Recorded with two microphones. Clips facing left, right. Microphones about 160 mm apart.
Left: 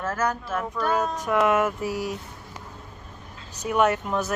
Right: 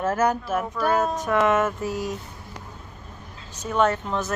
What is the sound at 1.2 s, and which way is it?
Speech, 10° left (ahead or behind).